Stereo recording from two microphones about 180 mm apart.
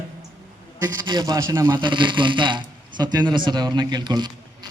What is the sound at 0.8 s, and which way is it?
A man's voice, 25° right (ahead or behind).